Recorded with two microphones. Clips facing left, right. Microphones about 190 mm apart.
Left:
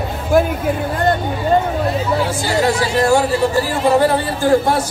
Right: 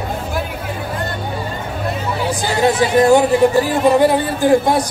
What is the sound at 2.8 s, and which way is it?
Speech, 20° right (ahead or behind).